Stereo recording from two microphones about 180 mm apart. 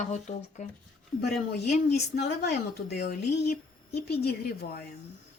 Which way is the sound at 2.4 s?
65° left (ahead or behind).